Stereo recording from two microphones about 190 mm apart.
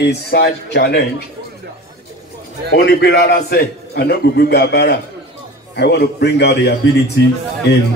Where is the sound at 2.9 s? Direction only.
60° left (ahead or behind).